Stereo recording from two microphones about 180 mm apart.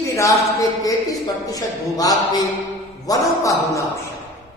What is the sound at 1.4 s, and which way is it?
Speech, 20° left (ahead or behind).